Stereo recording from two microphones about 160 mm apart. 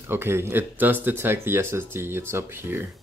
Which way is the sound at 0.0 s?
15° right (ahead or behind).